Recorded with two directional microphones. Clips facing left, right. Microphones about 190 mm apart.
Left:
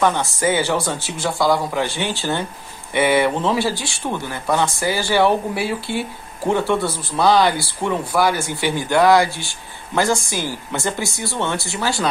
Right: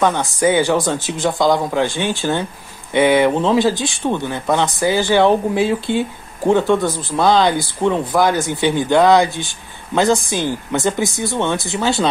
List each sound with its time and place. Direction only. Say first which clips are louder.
0.0 s speech: right 3 dB; 15° right (ahead or behind)